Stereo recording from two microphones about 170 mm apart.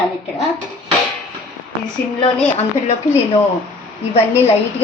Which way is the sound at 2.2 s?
40° left (ahead or behind).